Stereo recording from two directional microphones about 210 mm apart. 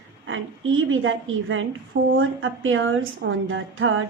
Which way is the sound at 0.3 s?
70° right (ahead or behind).